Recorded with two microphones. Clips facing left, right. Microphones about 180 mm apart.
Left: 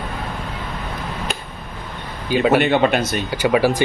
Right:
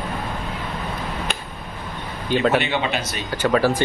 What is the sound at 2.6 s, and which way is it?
Speech, 50° left (ahead or behind).